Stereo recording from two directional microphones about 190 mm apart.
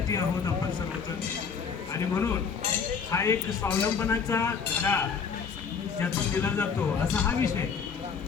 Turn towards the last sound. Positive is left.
turn(degrees=10)  # may be behind; listen again after turning